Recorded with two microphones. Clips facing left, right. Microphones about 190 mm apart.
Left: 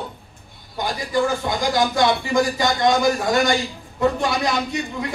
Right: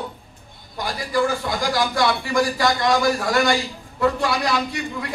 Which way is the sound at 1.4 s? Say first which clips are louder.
Left 2 dB; 20° left (ahead or behind).